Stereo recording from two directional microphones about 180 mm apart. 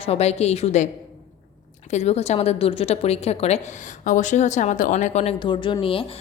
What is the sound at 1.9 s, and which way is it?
A woman's voice, 40° left (ahead or behind).